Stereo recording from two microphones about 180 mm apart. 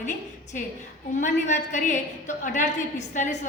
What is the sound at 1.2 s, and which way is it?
A woman's voice, 40° left (ahead or behind).